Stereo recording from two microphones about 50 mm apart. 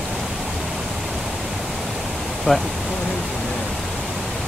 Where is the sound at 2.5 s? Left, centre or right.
Centre.